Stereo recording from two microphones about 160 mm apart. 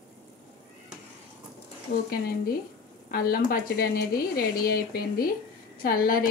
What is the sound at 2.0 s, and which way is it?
A woman's voice, 70° left (ahead or behind).